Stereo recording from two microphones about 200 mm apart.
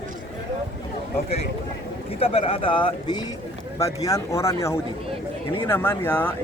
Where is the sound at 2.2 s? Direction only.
30° left (ahead or behind).